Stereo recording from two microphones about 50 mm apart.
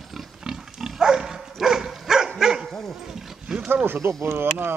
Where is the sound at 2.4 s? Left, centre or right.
Centre.